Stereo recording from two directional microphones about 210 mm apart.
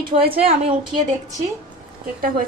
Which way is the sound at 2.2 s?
40° right (ahead or behind).